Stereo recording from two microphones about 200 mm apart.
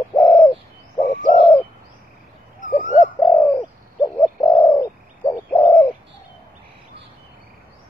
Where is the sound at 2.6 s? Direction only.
40° left (ahead or behind).